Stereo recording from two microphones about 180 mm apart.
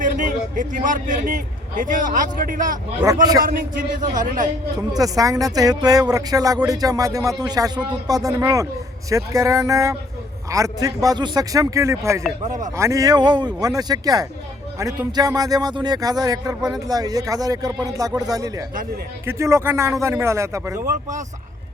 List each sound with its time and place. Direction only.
0.0 s a man's voice: 45° right (ahead or behind)
3.0 s speech: 20° right (ahead or behind)
3.4 s speech: 50° right (ahead or behind)
4.9 s a man's voice: 20° right (ahead or behind)
12.5 s speech: 45° right (ahead or behind)
12.7 s speech: 15° right (ahead or behind)
18.7 s speech: 50° right (ahead or behind)
19.2 s a man's voice: 15° right (ahead or behind)
20.7 s speech: 45° right (ahead or behind)